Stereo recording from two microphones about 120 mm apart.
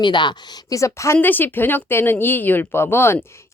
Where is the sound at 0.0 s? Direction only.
40° left (ahead or behind).